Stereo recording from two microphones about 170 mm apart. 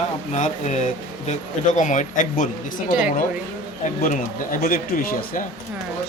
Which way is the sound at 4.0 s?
55° left (ahead or behind).